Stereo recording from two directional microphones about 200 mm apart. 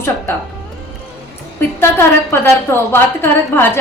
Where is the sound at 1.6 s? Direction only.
10° left (ahead or behind).